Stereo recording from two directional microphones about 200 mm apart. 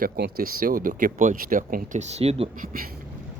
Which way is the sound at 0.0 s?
45° right (ahead or behind).